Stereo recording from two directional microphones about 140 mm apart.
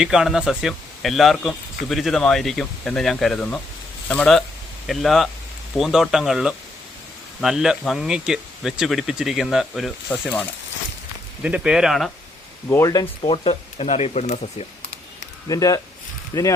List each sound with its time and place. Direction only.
0.0 s speech: 5° right (ahead or behind)
10.1 s speech: 10° left (ahead or behind)
11.4 s speech: 5° right (ahead or behind)
12.7 s speech: 25° left (ahead or behind)
13.3 s speech: 40° left (ahead or behind)
15.4 s speech: 25° left (ahead or behind)